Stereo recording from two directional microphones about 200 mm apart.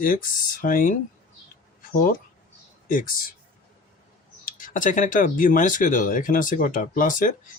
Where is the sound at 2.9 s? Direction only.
45° left (ahead or behind).